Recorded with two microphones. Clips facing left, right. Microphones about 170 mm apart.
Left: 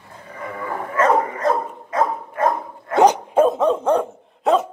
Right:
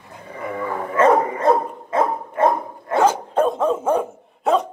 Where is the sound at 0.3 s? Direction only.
30° right (ahead or behind).